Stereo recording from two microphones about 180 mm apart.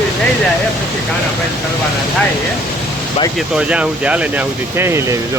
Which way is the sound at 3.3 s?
5° right (ahead or behind).